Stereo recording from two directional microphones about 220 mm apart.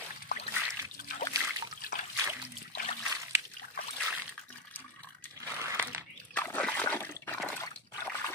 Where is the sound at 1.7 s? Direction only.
40° left (ahead or behind).